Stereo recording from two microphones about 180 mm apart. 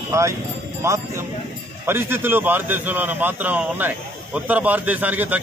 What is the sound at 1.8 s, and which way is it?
A man's voice, 10° right (ahead or behind).